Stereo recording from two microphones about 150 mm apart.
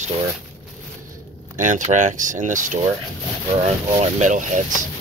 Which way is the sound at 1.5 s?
55° right (ahead or behind).